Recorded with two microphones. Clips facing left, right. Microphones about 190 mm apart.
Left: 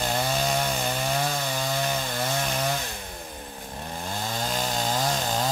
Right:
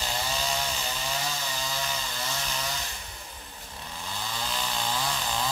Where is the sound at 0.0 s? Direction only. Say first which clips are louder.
Left 6 dB; 55° left (ahead or behind).